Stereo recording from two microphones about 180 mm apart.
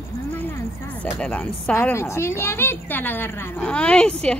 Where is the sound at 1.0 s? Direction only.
5° left (ahead or behind).